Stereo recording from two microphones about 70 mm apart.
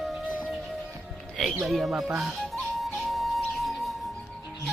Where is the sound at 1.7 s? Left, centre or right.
Centre.